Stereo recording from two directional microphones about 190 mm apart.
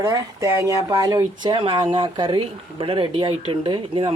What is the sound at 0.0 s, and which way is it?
Speech, 20° right (ahead or behind).